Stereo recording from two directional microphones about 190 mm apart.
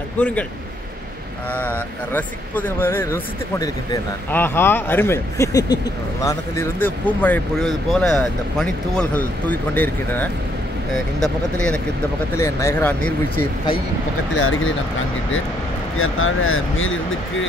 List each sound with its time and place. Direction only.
0.2 s speech: 5° left (ahead or behind)
1.5 s speech: 10° left (ahead or behind)
12.4 s speech: 15° left (ahead or behind)
14.3 s speech: 90° left
16.0 s speech: 90° left